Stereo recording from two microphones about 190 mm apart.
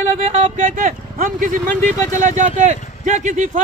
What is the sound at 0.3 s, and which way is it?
Speech, 40° right (ahead or behind).